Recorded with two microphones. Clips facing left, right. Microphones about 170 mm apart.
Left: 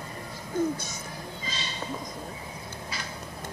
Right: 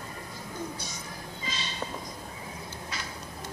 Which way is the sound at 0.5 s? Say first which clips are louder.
Left 11 dB; 50° left (ahead or behind).